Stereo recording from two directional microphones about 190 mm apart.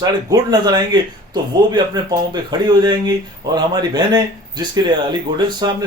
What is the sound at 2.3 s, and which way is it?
A man's voice, 20° right (ahead or behind).